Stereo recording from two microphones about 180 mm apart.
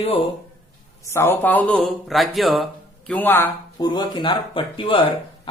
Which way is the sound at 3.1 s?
10° left (ahead or behind).